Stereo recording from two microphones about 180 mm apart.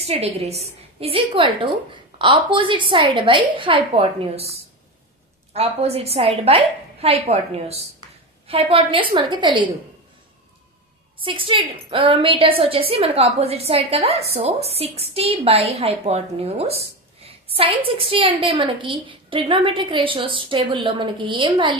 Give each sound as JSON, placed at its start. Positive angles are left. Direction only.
{"t": 0.0, "sound": "a woman's voice", "side_deg": -35}
{"t": 11.2, "sound": "a woman's voice", "side_deg": -30}